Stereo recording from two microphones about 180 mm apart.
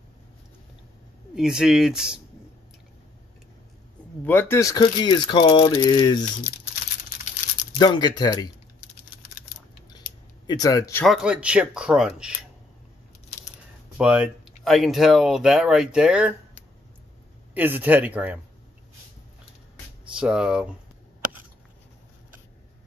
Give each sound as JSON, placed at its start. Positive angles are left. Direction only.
{"t": 1.3, "sound": "speech", "side_deg": -5}
{"t": 4.2, "sound": "speech", "side_deg": 10}
{"t": 7.8, "sound": "speech", "side_deg": 25}
{"t": 9.8, "sound": "scissors", "side_deg": 20}
{"t": 11.1, "sound": "speech", "side_deg": -5}
{"t": 13.9, "sound": "speech", "side_deg": -5}
{"t": 17.6, "sound": "speech", "side_deg": -10}
{"t": 20.2, "sound": "speech", "side_deg": -5}